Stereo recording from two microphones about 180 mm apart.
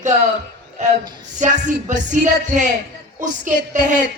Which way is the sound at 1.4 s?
45° right (ahead or behind).